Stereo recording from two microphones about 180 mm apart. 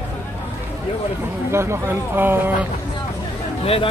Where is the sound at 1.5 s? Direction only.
15° right (ahead or behind).